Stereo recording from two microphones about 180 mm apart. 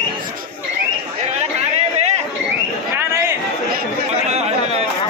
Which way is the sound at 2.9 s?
15° right (ahead or behind).